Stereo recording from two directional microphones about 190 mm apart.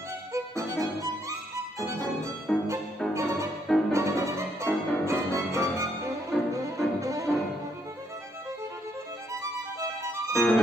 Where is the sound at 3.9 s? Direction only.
15° right (ahead or behind).